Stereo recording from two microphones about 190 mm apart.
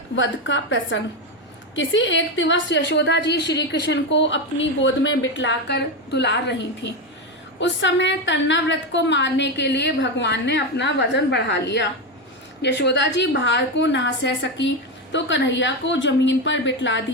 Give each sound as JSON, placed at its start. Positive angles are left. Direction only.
{"t": 0.2, "sound": "a woman's voice", "side_deg": 80}
{"t": 7.6, "sound": "a woman's voice", "side_deg": 70}